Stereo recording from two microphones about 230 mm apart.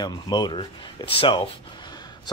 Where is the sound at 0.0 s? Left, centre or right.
Centre.